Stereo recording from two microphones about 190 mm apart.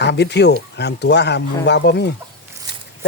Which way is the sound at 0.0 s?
65° left (ahead or behind).